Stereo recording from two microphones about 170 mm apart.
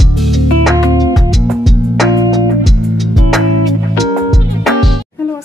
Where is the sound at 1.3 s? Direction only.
Centre (ahead or behind).